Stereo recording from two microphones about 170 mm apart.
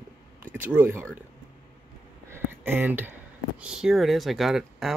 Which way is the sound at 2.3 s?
10° right (ahead or behind).